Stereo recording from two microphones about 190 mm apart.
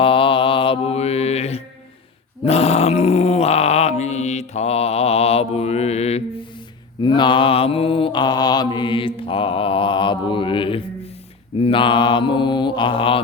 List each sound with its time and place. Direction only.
0.0 s mantra: 30° left (ahead or behind)
2.4 s groan: 35° left (ahead or behind)
7.0 s mantra: 25° left (ahead or behind)